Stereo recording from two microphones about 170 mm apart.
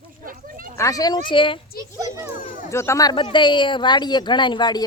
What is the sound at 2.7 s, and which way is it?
Speech, 15° left (ahead or behind).